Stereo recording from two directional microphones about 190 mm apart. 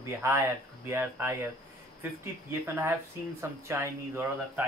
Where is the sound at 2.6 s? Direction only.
10° right (ahead or behind).